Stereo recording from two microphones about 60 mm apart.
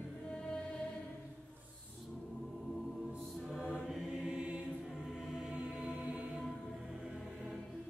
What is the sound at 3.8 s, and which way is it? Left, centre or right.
Mantra, centre.